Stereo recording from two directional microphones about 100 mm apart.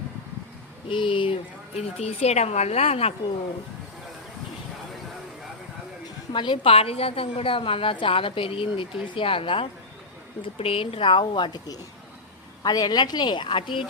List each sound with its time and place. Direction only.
0.9 s a woman's voice: 55° left (ahead or behind); by 3.2 s 85° left
6.1 s a woman's voice: 50° left (ahead or behind)